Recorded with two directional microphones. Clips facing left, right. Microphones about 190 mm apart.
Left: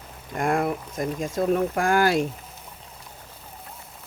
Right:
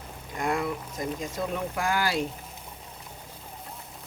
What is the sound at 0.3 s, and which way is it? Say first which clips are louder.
Speech: left 5 dB; 55° left (ahead or behind).